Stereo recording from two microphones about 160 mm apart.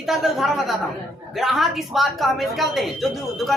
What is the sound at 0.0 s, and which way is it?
A woman's voice, centre (ahead or behind).